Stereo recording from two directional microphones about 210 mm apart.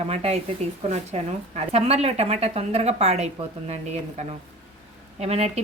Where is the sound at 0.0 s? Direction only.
30° right (ahead or behind).